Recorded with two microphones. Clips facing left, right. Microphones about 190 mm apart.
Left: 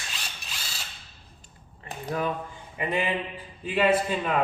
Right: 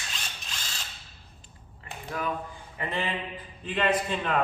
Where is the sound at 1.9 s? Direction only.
30° left (ahead or behind).